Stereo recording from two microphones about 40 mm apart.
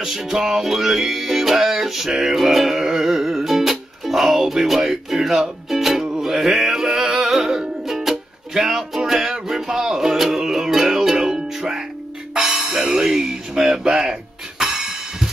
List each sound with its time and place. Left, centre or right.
0.0 s music: centre
7.3 s music: centre
13.0 s a sound: centre
14.6 s music: centre